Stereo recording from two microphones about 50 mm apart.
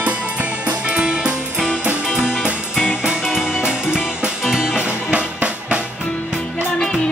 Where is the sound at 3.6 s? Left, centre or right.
Centre.